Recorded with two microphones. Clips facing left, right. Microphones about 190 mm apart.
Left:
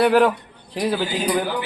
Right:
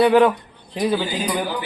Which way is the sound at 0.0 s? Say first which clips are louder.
Right 2 dB; centre (ahead or behind).